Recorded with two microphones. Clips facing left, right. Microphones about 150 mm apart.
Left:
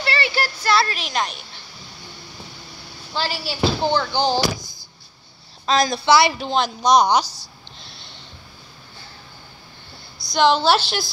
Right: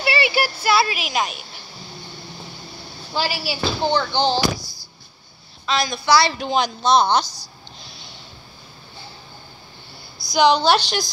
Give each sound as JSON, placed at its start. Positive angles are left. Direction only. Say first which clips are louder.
{"t": 0.0, "sound": "a sound", "louder": "right 3 dB", "side_deg": -10}
{"t": 0.7, "sound": "a woman's voice", "louder": "left 1 dB", "side_deg": -10}
{"t": 3.2, "sound": "speech", "louder": "even", "side_deg": -5}
{"t": 5.7, "sound": "a woman's voice", "louder": "left 4 dB", "side_deg": 40}
{"t": 6.0, "sound": "speech", "louder": "left 1 dB", "side_deg": 20}
{"t": 6.3, "sound": "speech", "louder": "right 1 dB", "side_deg": 0}
{"t": 6.8, "sound": "speech", "louder": "left 2 dB", "side_deg": 15}
{"t": 7.8, "sound": "snort", "louder": "right 1 dB", "side_deg": 0}
{"t": 10.1, "sound": "speech", "louder": "right 1 dB", "side_deg": 0}